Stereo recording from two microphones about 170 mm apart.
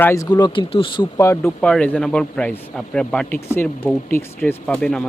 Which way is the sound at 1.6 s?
5° left (ahead or behind).